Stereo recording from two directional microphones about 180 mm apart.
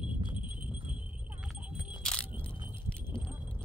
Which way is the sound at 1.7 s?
5° left (ahead or behind).